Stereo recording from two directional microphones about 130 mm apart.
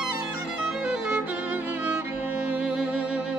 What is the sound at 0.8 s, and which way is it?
Music, 5° right (ahead or behind).